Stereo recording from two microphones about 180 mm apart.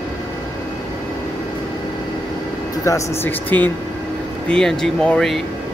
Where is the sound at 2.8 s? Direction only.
15° left (ahead or behind).